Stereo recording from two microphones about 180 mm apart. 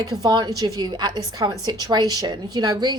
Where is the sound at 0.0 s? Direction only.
20° right (ahead or behind).